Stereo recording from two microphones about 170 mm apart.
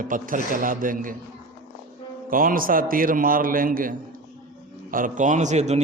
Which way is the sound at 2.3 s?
55° right (ahead or behind).